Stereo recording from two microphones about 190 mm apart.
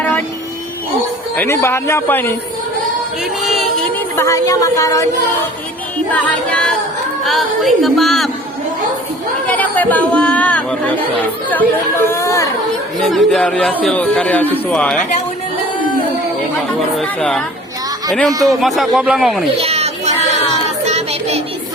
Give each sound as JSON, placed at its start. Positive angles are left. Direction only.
{"t": 1.4, "sound": "speech", "side_deg": 15}
{"t": 3.4, "sound": "a sound", "side_deg": 0}
{"t": 4.2, "sound": "speech", "side_deg": 15}
{"t": 6.1, "sound": "speech", "side_deg": 10}
{"t": 9.5, "sound": "speech", "side_deg": 10}
{"t": 13.0, "sound": "speech", "side_deg": 0}
{"t": 17.0, "sound": "speech", "side_deg": 5}
{"t": 19.5, "sound": "a sound", "side_deg": -30}